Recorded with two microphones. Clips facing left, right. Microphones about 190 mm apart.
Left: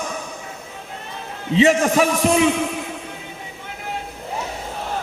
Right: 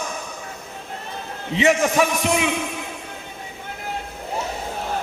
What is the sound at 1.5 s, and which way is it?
Speech, 30° left (ahead or behind).